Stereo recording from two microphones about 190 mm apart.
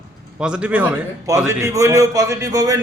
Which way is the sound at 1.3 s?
15° right (ahead or behind).